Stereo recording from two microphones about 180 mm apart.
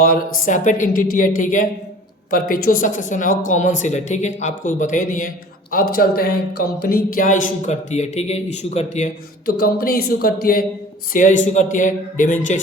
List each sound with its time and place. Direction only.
0.0 s speech: 50° left (ahead or behind)
11.1 s speech: 45° left (ahead or behind)